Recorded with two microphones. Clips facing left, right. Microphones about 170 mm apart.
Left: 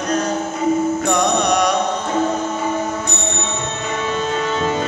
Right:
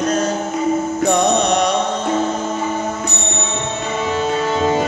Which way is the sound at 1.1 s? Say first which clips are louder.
Right 2 dB; 25° right (ahead or behind).